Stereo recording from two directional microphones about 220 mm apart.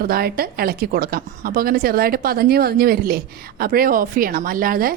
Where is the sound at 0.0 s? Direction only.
45° right (ahead or behind).